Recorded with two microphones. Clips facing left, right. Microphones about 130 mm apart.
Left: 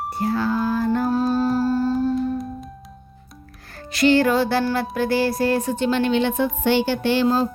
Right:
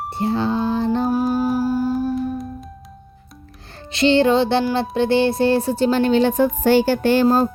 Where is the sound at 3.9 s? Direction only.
25° right (ahead or behind).